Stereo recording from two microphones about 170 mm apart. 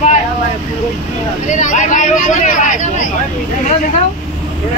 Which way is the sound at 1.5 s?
45° left (ahead or behind).